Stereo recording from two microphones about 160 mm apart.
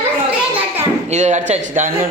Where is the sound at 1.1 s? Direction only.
45° right (ahead or behind).